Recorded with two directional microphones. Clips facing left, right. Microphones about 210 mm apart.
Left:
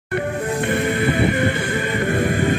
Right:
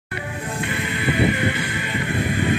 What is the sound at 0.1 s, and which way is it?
Music, 55° left (ahead or behind).